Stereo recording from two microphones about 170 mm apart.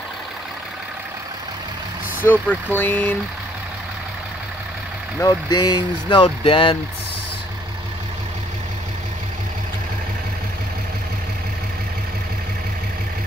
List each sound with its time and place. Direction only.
2.4 s speech: 10° left (ahead or behind)
5.2 s speech: 25° left (ahead or behind)